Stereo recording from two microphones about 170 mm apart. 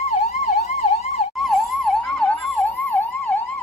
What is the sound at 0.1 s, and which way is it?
Emergency vehicle, 40° left (ahead or behind).